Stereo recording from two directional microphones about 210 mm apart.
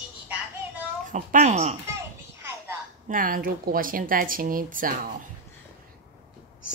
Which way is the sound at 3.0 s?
40° right (ahead or behind).